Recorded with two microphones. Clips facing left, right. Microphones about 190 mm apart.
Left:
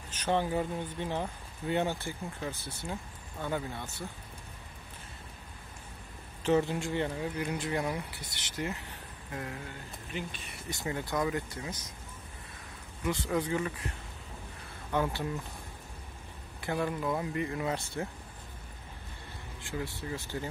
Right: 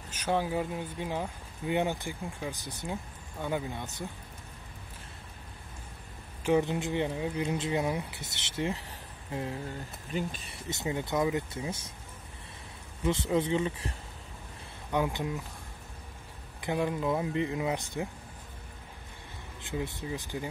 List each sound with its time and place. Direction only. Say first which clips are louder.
0.1 s speech: even; 10° right (ahead or behind)
6.4 s speech: right 1 dB; 15° right (ahead or behind)
10.1 s speech: right 5 dB; 35° right (ahead or behind)
10.7 s speech: right 3 dB; 20° right (ahead or behind)
13.0 s speech: right 3 dB; 25° right (ahead or behind)
14.9 s speech: right 1 dB; 15° right (ahead or behind)
16.6 s speech: right 2 dB; 15° right (ahead or behind)
19.6 s speech: right 2 dB; 20° right (ahead or behind)